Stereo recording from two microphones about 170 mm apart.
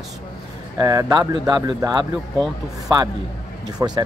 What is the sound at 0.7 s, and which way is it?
Speech, 20° right (ahead or behind).